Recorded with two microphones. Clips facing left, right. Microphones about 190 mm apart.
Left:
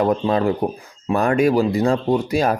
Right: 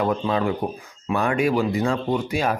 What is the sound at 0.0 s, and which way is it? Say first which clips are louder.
Speech: left 4 dB; 40° left (ahead or behind).